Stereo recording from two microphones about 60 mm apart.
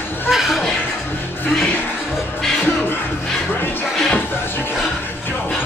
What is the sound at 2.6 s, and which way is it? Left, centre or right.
Music, left.